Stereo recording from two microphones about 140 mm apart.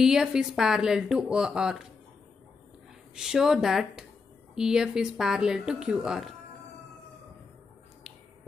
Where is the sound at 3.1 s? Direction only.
5° right (ahead or behind).